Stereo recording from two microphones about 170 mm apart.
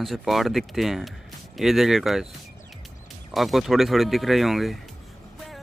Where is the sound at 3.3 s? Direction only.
Centre (ahead or behind).